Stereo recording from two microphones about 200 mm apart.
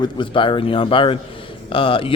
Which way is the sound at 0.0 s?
25° left (ahead or behind).